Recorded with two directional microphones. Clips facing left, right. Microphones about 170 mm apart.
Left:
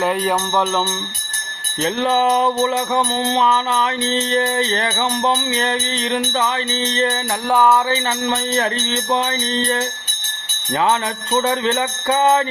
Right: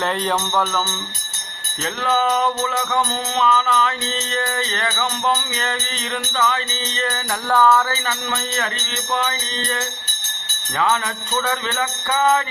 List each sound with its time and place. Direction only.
0.0 s music: 10° left (ahead or behind)
1.8 s music: 30° left (ahead or behind)
7.5 s music: 15° left (ahead or behind)
8.3 s music: 30° left (ahead or behind)
11.3 s music: 30° left (ahead or behind)